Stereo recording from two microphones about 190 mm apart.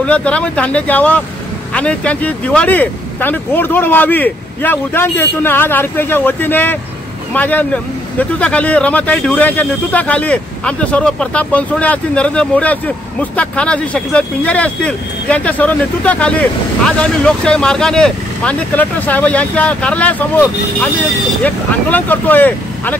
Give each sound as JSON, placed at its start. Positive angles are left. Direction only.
{"t": 0.0, "sound": "speech", "side_deg": 5}